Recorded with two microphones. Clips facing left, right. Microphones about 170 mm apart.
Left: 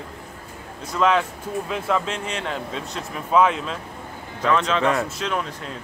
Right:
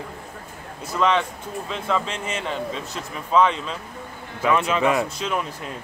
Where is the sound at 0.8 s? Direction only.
Centre (ahead or behind).